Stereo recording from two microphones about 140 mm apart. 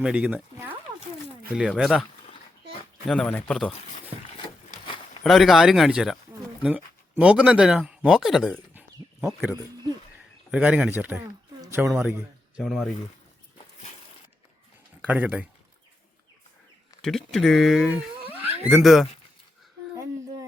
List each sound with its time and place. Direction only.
0.0 s speech: 5° right (ahead or behind)
3.1 s speech: 5° left (ahead or behind)
5.2 s speech: centre (ahead or behind)
9.2 s speech: 15° right (ahead or behind)
11.6 s a sound: 15° right (ahead or behind)
11.9 s speech: 15° right (ahead or behind)
12.5 s speech: centre (ahead or behind)
15.0 s speech: 10° right (ahead or behind)
17.0 s speech: 5° left (ahead or behind)
17.9 s cat: 10° right (ahead or behind)
18.7 s speech: centre (ahead or behind)